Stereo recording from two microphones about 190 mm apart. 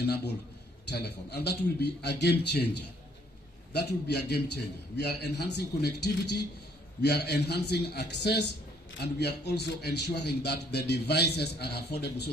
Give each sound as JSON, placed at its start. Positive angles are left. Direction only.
{"t": 0.0, "sound": "a man's voice", "side_deg": 60}